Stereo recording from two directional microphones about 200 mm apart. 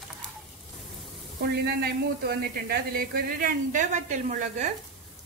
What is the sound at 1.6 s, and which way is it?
Speech, 50° right (ahead or behind).